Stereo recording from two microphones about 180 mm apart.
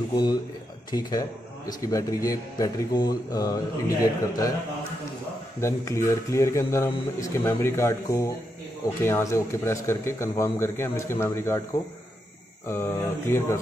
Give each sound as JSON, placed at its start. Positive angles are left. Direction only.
{"t": 0.1, "sound": "speech", "side_deg": 20}
{"t": 1.7, "sound": "speech", "side_deg": 20}
{"t": 5.6, "sound": "a man's voice", "side_deg": 15}
{"t": 12.6, "sound": "a man's voice", "side_deg": 15}